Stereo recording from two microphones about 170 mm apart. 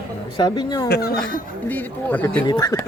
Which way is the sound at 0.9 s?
65° left (ahead or behind).